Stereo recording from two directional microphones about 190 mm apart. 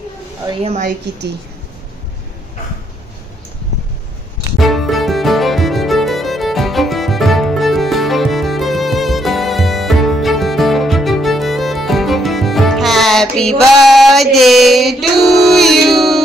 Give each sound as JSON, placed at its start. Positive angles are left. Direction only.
{"t": 0.6, "sound": "a woman's voice", "side_deg": -30}
{"t": 4.6, "sound": "music", "side_deg": 0}